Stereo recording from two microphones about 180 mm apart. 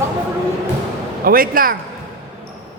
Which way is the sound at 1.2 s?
55° right (ahead or behind).